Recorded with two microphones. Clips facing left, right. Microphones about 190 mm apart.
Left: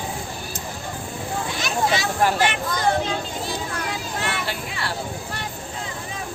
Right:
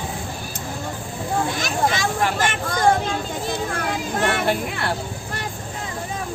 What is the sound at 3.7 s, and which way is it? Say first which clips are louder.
Children playing: right 4 dB; 50° right (ahead or behind).